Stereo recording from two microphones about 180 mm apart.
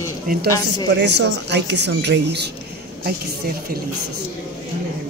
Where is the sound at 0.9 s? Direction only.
75° right (ahead or behind).